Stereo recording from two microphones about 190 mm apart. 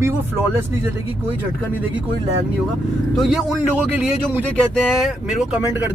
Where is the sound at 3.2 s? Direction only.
Centre (ahead or behind).